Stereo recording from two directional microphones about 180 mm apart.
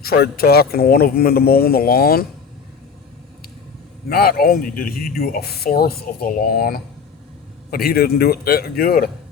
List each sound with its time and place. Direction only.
0.0 s speech: 60° left (ahead or behind)
4.1 s speech: 55° left (ahead or behind)